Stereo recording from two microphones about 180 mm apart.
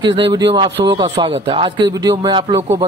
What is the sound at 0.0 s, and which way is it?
A woman's voice, 25° right (ahead or behind).